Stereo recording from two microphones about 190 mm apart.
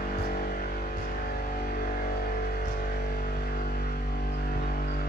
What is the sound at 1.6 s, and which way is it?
Vehicle, 50° left (ahead or behind).